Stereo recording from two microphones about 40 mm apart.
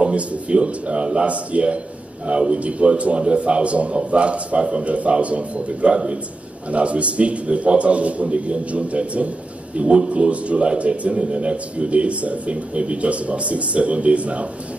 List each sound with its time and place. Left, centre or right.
0.0 s a man's voice: right